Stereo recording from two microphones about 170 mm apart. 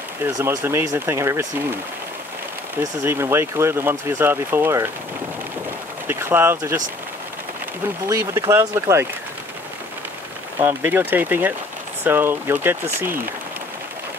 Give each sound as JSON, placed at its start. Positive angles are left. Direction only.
{"t": 0.4, "sound": "speech", "side_deg": -15}
{"t": 3.0, "sound": "speech", "side_deg": -15}
{"t": 6.0, "sound": "speech", "side_deg": -10}
{"t": 8.1, "sound": "speech", "side_deg": -20}
{"t": 10.6, "sound": "speech", "side_deg": -10}